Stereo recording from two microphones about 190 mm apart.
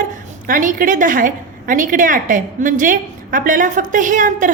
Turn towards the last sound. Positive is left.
turn(degrees=-45)  # may be behind; listen again after turning